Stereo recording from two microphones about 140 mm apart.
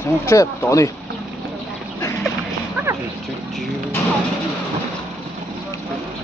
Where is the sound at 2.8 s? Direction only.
10° right (ahead or behind).